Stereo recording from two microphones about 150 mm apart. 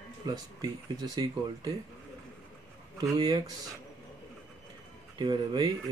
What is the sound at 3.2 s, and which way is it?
Speech, 25° right (ahead or behind).